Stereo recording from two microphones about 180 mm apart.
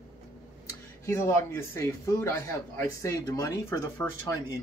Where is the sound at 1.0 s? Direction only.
15° left (ahead or behind).